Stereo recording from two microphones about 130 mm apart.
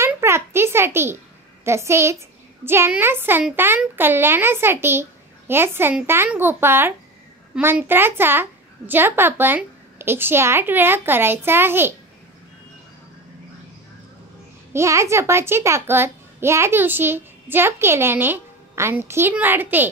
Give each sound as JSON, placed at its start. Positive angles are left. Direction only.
{"t": 0.0, "sound": "a sound", "side_deg": -20}
{"t": 1.6, "sound": "a child's voice", "side_deg": -20}
{"t": 14.7, "sound": "a child's voice", "side_deg": -20}